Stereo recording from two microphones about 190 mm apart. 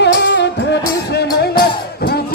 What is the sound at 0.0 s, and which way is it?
Music, 65° left (ahead or behind).